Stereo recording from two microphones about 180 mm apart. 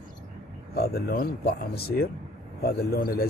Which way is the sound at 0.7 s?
60° left (ahead or behind).